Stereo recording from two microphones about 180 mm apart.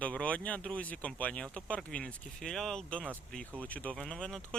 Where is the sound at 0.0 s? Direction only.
5° left (ahead or behind).